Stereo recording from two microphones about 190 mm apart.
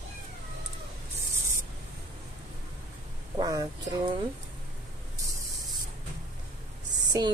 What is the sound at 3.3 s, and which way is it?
Speech, 20° right (ahead or behind).